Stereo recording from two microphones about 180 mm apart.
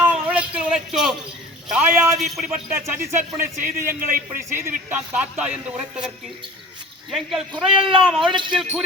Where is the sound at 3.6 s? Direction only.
15° right (ahead or behind).